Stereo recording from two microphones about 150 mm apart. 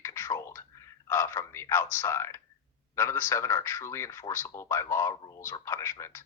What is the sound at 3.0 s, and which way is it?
A man's voice, 15° left (ahead or behind).